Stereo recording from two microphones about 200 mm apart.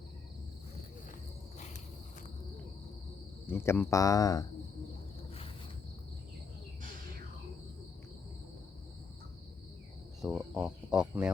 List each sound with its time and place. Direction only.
1.5 s cricket: 35° left (ahead or behind)
3.4 s speech: 10° left (ahead or behind)
10.2 s speech: centre (ahead or behind)